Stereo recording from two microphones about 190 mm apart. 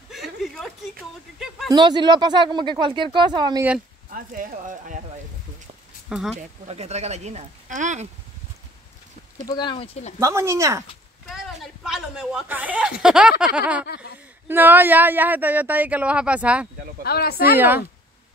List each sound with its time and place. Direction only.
0.1 s a sound: centre (ahead or behind)
1.7 s speech: 25° right (ahead or behind)
4.1 s speech: 45° right (ahead or behind)
6.0 s speech: 5° right (ahead or behind)
6.3 s speech: 35° right (ahead or behind)
9.5 s speech: 25° left (ahead or behind)
10.1 s speech: 15° right (ahead or behind)
11.2 s a sound: centre (ahead or behind)
13.6 s speech: 5° right (ahead or behind)
13.8 s speech: 60° left (ahead or behind)
14.5 s speech: 10° right (ahead or behind)
17.0 s speech: 55° left (ahead or behind)
17.6 s speech: 10° right (ahead or behind)